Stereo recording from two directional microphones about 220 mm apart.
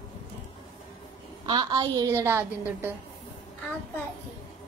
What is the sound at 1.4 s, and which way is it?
A woman's voice, 20° right (ahead or behind).